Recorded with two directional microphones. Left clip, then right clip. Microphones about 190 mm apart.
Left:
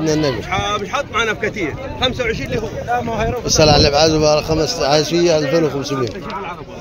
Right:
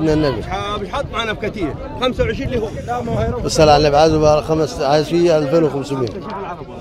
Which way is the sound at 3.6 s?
Centre (ahead or behind).